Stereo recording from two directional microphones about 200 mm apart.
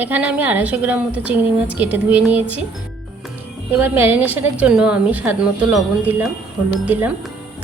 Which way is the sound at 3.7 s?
10° right (ahead or behind).